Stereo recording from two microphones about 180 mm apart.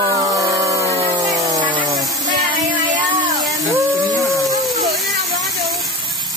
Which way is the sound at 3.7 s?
20° right (ahead or behind).